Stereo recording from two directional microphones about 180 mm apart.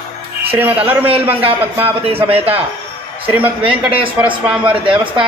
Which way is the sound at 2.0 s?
30° right (ahead or behind).